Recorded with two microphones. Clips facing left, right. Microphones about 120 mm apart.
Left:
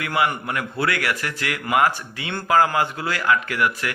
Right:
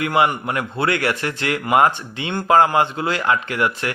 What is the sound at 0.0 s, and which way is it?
A man's voice, 25° right (ahead or behind).